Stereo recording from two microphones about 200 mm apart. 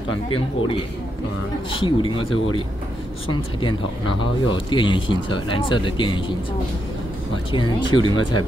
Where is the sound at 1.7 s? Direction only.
25° left (ahead or behind).